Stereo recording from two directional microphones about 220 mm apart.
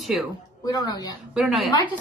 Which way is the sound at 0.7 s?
20° left (ahead or behind).